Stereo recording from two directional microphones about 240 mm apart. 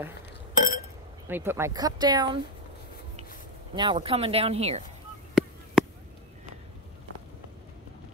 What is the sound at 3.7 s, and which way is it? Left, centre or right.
Speech, centre.